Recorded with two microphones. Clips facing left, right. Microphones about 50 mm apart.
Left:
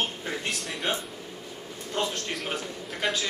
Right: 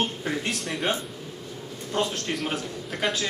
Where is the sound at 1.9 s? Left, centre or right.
Centre.